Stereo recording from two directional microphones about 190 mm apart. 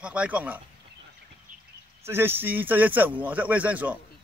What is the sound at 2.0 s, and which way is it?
A man's voice, 10° right (ahead or behind).